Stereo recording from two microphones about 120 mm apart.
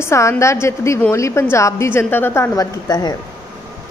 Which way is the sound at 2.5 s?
30° left (ahead or behind).